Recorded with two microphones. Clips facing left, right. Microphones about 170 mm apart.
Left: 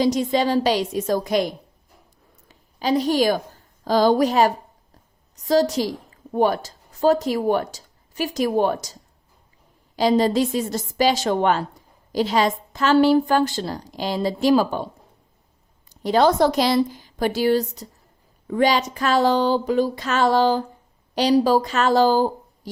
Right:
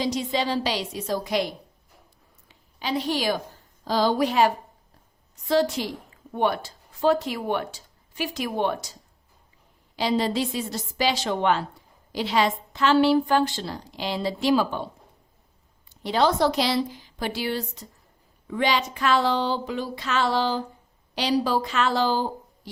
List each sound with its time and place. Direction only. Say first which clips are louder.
0.0 s a woman's voice: left 6 dB; 45° left (ahead or behind)
15.9 s a woman's voice: left 5 dB; 45° left (ahead or behind)